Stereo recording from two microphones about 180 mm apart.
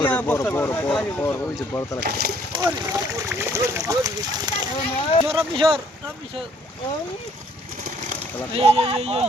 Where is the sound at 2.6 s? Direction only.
15° right (ahead or behind).